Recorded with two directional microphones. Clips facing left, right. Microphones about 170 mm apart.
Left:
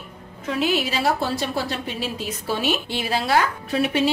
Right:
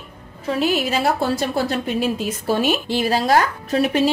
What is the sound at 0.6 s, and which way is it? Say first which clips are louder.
A woman's voice: right 2 dB; 50° right (ahead or behind).